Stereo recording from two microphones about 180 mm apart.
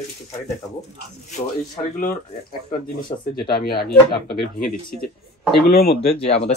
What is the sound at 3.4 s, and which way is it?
Speech, 60° left (ahead or behind).